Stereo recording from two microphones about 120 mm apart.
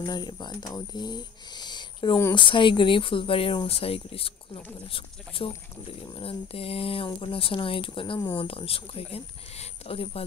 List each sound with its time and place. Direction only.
0.0 s speech: 35° left (ahead or behind); by 10.2 s 55° left (ahead or behind)